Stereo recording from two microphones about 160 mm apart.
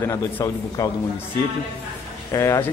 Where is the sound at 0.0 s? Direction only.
15° left (ahead or behind).